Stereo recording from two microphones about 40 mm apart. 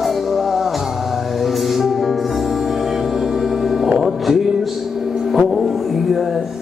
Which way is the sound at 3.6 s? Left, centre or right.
Centre.